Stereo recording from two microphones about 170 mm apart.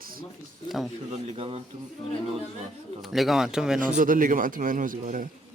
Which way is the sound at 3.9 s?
50° right (ahead or behind).